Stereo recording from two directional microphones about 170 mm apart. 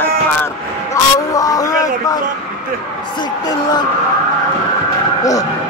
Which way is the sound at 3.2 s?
25° left (ahead or behind).